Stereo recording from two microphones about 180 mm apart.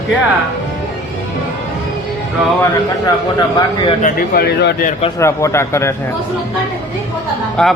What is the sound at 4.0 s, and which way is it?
Speech, 50° left (ahead or behind).